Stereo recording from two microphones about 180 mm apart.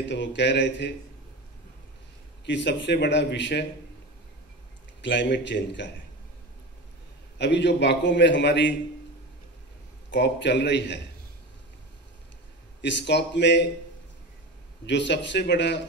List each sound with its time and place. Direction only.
0.1 s a man's voice: 80° left
2.4 s a man's voice: 80° left
5.0 s a man's voice: 80° left
7.3 s a man's voice: 75° left (ahead or behind)
10.1 s a man's voice: 75° left (ahead or behind)
12.8 s a man's voice: 75° left (ahead or behind)
14.9 s a man's voice: 75° left (ahead or behind)